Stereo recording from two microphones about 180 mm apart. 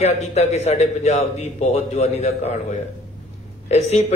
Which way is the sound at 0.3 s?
40° left (ahead or behind).